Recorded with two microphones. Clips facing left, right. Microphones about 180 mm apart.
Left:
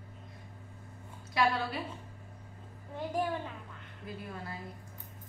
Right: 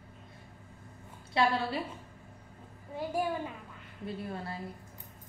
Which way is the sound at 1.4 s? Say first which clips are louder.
Right 1 dB; 30° right (ahead or behind).